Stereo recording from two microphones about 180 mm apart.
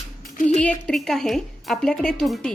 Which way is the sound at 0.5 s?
5° left (ahead or behind).